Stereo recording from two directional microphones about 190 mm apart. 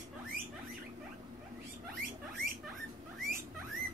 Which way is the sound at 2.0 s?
50° right (ahead or behind).